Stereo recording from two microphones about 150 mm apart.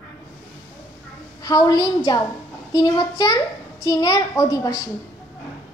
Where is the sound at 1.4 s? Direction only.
25° left (ahead or behind).